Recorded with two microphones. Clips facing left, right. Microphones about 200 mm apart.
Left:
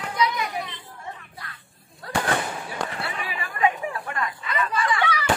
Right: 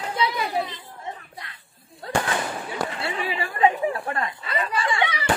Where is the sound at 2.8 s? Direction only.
25° right (ahead or behind).